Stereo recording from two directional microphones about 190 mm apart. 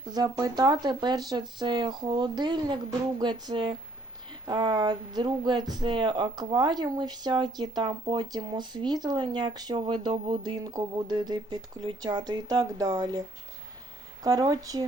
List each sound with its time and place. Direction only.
0.1 s speech: 20° right (ahead or behind)
14.3 s speech: 20° right (ahead or behind)